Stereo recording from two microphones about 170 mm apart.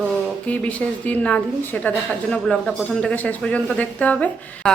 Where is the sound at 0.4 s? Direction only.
10° left (ahead or behind).